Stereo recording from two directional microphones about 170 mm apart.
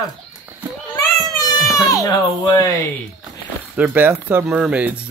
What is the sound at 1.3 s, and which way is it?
Baby cry, 20° left (ahead or behind).